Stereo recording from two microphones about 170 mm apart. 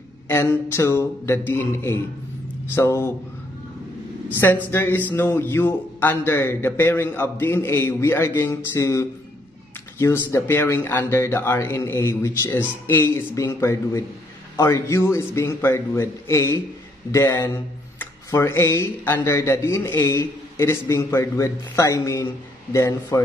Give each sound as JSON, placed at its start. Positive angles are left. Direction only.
{"t": 0.3, "sound": "a man's voice", "side_deg": 15}
{"t": 4.4, "sound": "speech", "side_deg": 15}